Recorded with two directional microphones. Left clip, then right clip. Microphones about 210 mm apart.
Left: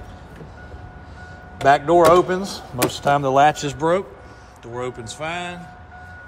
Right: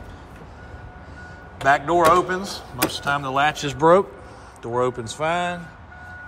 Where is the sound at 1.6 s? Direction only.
30° left (ahead or behind).